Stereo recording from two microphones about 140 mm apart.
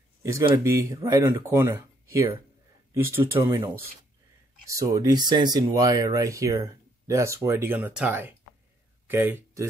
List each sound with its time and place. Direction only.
0.2 s speech: 25° right (ahead or behind)